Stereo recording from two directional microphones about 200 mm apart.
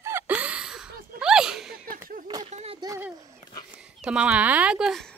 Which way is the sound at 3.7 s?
5° right (ahead or behind).